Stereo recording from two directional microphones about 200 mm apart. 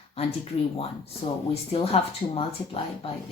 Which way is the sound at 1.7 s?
30° left (ahead or behind).